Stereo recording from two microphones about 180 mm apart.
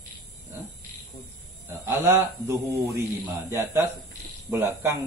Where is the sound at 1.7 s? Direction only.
15° right (ahead or behind).